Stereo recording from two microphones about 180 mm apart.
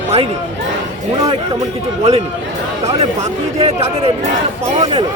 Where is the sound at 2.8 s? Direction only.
35° right (ahead or behind).